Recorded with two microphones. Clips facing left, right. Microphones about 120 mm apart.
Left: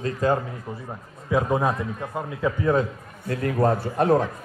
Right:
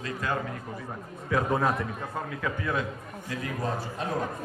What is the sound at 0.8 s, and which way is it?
A man's voice, 20° left (ahead or behind).